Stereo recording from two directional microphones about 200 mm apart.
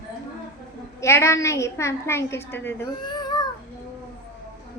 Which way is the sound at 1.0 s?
15° left (ahead or behind).